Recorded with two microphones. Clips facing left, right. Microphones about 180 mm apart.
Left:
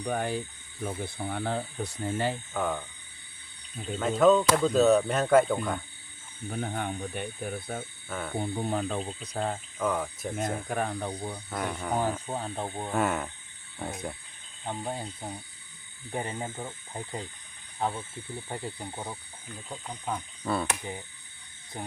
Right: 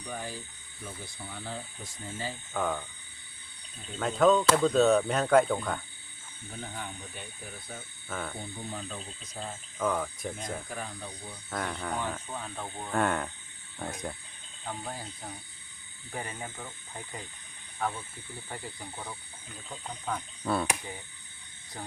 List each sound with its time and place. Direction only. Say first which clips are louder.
0.0 s speech: left 9 dB; 60° left (ahead or behind)
2.5 s speech: left 1 dB; 5° left (ahead or behind)
4.2 s speech: left 1 dB; centre (ahead or behind)
6.5 s speech: left 8 dB; 60° left (ahead or behind)
9.7 s speech: right 1 dB; 5° left (ahead or behind)
10.3 s speech: left 7 dB; 55° left (ahead or behind)
11.5 s speech: left 1 dB; 5° left (ahead or behind)
12.3 s speech: left 5 dB; 35° left (ahead or behind)
12.9 s speech: right 1 dB; 5° left (ahead or behind)
14.6 s speech: left 4 dB; 25° left (ahead or behind)
20.4 s cricket: even; centre (ahead or behind)
21.7 s speech: left 3 dB; 20° left (ahead or behind)